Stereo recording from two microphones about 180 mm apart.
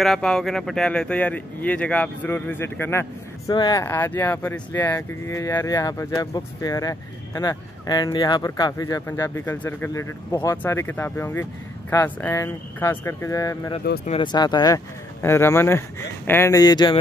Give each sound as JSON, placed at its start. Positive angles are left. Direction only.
{"t": 0.0, "sound": "speech", "side_deg": 0}